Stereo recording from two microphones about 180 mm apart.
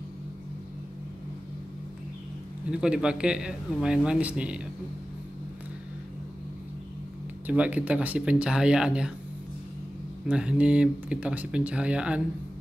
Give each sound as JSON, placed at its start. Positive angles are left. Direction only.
{"t": 2.7, "sound": "a man's voice", "side_deg": -5}
{"t": 7.4, "sound": "speech", "side_deg": -10}
{"t": 10.2, "sound": "speech", "side_deg": -5}